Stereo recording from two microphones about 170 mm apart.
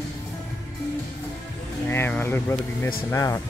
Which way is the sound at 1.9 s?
15° left (ahead or behind).